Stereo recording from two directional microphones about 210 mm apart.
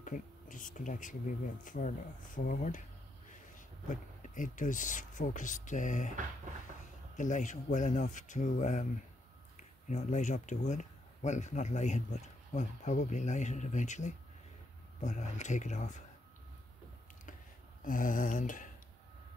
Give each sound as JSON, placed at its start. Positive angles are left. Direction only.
{"t": 0.0, "sound": "speech", "side_deg": 40}
{"t": 7.2, "sound": "speech", "side_deg": 35}
{"t": 9.8, "sound": "speech", "side_deg": 35}
{"t": 17.8, "sound": "speech", "side_deg": 40}